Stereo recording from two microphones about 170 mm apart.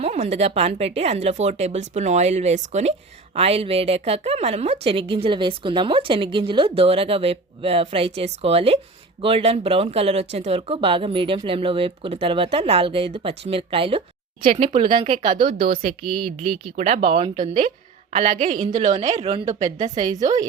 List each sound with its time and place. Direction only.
0.0 s a woman's voice: 40° right (ahead or behind)
15.3 s a woman's voice: 50° right (ahead or behind)
16.4 s a woman's voice: 40° right (ahead or behind)
18.3 s a woman's voice: 50° right (ahead or behind)
19.6 s speech: 25° right (ahead or behind)
20.1 s a woman's voice: 45° right (ahead or behind)